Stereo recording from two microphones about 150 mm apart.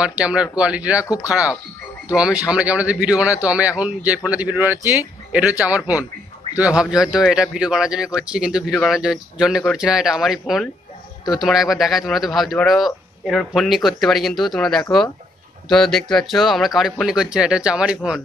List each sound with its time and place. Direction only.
0.0 s a man's voice: 5° right (ahead or behind)
1.0 s speech: 20° left (ahead or behind)
2.1 s a man's voice: 5° right (ahead or behind)